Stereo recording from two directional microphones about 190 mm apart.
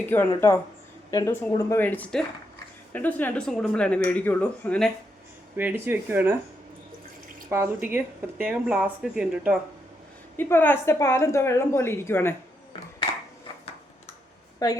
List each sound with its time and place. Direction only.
0.0 s a woman's voice: 10° left (ahead or behind)
5.5 s speech: 10° right (ahead or behind)
7.5 s speech: 10° right (ahead or behind)
10.3 s a woman's voice: 10° left (ahead or behind)
14.6 s a woman's voice: 20° left (ahead or behind)